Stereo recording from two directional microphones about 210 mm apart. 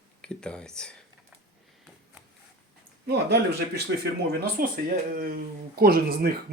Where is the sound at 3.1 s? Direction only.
50° right (ahead or behind).